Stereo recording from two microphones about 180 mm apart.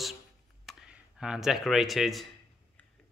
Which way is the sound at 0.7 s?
Centre (ahead or behind).